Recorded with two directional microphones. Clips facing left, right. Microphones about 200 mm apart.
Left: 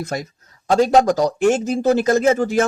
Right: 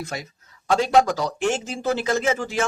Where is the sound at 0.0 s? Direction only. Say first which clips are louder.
Left 6 dB; 40° left (ahead or behind).